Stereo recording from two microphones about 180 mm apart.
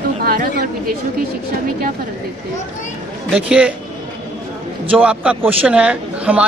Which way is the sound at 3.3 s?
5° right (ahead or behind).